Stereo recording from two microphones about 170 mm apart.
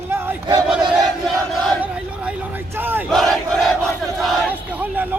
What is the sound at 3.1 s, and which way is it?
Crowd, centre (ahead or behind).